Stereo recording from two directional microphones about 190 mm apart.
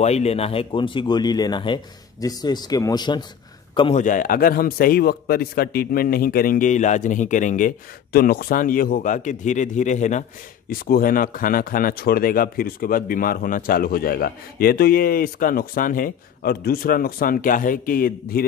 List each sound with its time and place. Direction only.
0.0 s speech: 35° left (ahead or behind)
3.9 s speech: 45° left (ahead or behind)